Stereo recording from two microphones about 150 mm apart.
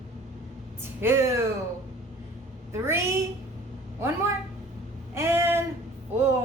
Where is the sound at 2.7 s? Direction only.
15° right (ahead or behind).